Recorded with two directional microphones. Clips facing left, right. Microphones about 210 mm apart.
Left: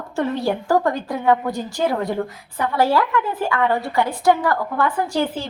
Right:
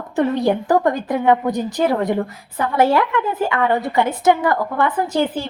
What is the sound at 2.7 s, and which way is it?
Speech, 20° right (ahead or behind).